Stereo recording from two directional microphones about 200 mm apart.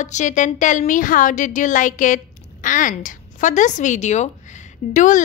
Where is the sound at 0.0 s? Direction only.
35° left (ahead or behind).